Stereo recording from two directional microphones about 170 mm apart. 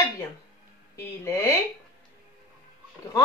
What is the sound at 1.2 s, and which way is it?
Speech, 15° left (ahead or behind).